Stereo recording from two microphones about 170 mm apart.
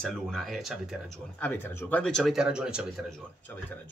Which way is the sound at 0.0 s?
Centre (ahead or behind).